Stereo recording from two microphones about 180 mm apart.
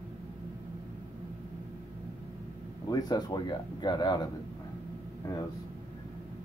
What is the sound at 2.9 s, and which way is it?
Speech, 20° left (ahead or behind).